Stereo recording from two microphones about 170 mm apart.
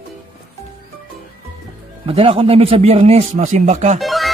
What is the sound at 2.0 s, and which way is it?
A man's voice, 35° right (ahead or behind).